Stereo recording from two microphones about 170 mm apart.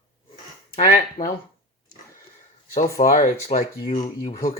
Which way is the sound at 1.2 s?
55° left (ahead or behind).